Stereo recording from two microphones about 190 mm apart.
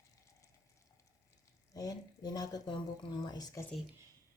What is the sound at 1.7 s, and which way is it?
Speech, 20° left (ahead or behind).